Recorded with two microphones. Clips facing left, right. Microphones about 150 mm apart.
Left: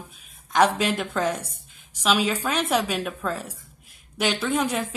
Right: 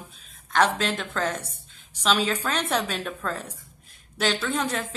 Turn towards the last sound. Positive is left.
turn(degrees=10)  # may be behind; listen again after turning